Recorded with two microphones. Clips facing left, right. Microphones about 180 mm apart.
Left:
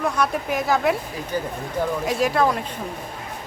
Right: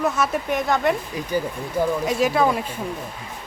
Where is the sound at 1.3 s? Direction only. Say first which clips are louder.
Right 3 dB; 10° right (ahead or behind).